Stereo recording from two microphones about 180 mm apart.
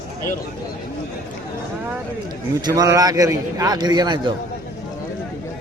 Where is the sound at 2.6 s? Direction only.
20° right (ahead or behind).